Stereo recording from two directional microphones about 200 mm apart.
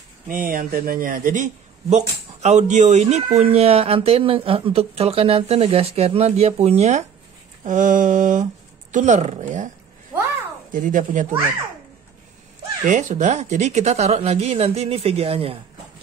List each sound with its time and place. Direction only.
0.3 s a man's voice: 45° right (ahead or behind)
10.7 s a man's voice: 40° right (ahead or behind)
12.8 s a man's voice: 40° right (ahead or behind)